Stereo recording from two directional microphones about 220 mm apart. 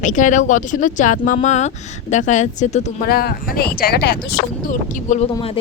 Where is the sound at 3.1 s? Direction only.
45° left (ahead or behind).